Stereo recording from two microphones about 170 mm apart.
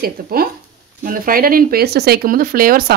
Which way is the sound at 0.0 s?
60° right (ahead or behind).